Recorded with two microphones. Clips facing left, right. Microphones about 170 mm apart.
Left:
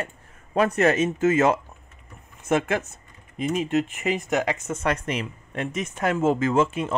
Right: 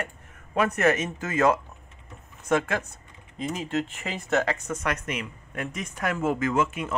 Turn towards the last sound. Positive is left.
turn(degrees=30)  # may be behind; listen again after turning